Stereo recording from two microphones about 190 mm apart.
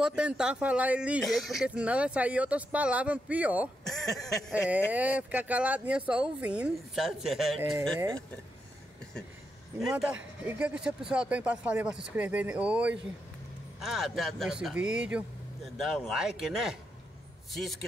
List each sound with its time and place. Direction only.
0.0 s speech: 5° right (ahead or behind)
9.8 s a man's voice: 5° right (ahead or behind)